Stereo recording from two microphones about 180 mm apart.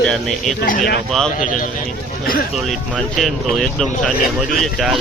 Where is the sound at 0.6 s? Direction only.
50° left (ahead or behind).